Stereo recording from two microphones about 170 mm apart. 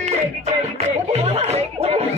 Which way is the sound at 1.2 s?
40° right (ahead or behind).